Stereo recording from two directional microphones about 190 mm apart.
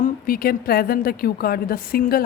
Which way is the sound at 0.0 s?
50° left (ahead or behind).